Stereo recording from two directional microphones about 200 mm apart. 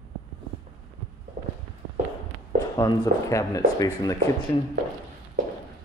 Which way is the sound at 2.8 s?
15° left (ahead or behind).